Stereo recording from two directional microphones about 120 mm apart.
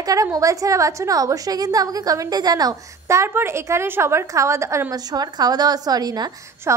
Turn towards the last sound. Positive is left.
turn(degrees=-35)  # may be behind; listen again after turning